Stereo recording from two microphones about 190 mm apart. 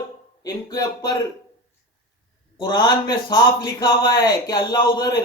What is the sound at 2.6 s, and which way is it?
A man's voice, 20° left (ahead or behind).